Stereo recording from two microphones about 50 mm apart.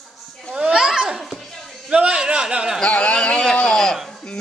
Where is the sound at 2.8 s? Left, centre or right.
Left.